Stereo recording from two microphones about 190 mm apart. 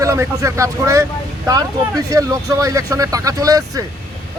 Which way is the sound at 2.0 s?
15° right (ahead or behind).